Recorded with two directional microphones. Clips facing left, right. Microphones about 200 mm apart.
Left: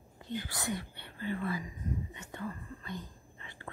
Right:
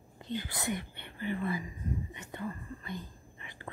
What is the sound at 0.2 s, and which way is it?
Whispering, 20° right (ahead or behind).